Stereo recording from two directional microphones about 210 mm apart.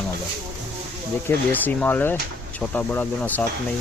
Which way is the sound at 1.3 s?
10° left (ahead or behind).